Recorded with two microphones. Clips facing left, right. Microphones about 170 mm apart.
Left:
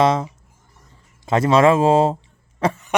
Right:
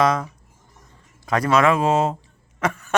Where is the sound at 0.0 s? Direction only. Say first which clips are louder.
Left 3 dB; 25° left (ahead or behind).